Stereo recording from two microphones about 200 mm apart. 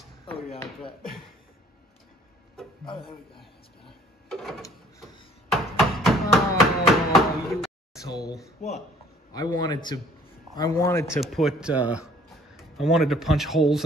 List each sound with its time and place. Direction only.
2.8 s a sound: 25° left (ahead or behind)
4.3 s drawer open or close: centre (ahead or behind)
5.5 s chopping: centre (ahead or behind)
9.3 s speech: 20° left (ahead or behind)
11.3 s speech: 5° right (ahead or behind)